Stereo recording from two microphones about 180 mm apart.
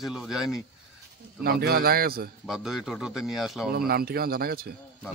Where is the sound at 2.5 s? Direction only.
Centre (ahead or behind).